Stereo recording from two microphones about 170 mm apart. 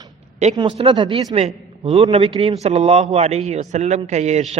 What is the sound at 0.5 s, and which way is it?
A man's voice, 30° right (ahead or behind).